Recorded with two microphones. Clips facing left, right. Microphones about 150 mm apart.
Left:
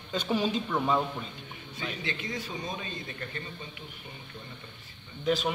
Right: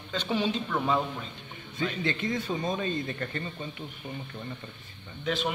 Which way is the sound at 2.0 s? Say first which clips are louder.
Right 6 dB; 55° right (ahead or behind).